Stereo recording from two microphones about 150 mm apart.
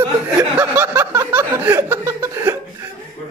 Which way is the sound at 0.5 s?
15° right (ahead or behind).